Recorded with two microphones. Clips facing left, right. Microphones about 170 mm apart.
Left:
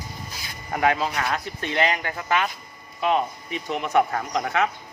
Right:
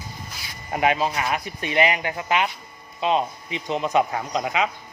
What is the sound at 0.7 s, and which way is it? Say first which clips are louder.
Speech: right 1 dB; 20° right (ahead or behind).